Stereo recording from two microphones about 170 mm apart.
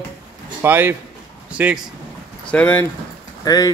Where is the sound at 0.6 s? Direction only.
10° right (ahead or behind).